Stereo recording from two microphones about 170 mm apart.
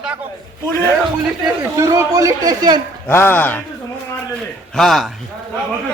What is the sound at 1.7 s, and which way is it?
Speech, 20° right (ahead or behind).